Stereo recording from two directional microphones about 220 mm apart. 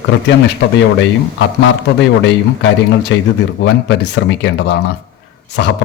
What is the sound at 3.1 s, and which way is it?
Speech, 55° left (ahead or behind).